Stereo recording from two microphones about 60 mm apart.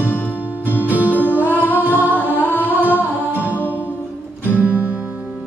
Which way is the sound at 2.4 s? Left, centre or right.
Left.